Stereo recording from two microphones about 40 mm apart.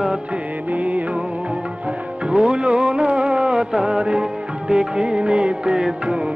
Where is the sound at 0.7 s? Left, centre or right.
Right.